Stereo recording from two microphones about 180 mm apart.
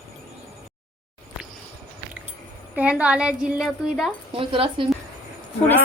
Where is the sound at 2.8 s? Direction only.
5° right (ahead or behind).